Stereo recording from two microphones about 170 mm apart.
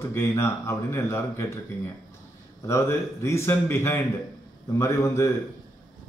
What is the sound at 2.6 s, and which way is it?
Speech, 15° left (ahead or behind).